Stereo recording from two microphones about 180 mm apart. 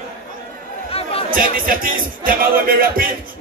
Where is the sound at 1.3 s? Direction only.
50° right (ahead or behind).